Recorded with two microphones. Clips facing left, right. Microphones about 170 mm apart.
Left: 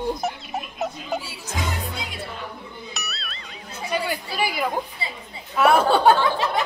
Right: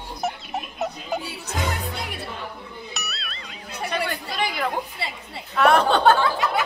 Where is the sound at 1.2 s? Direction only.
60° right (ahead or behind).